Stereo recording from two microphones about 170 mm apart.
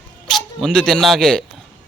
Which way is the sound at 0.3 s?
Centre (ahead or behind).